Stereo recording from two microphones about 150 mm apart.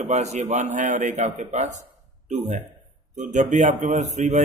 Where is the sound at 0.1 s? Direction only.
50° right (ahead or behind).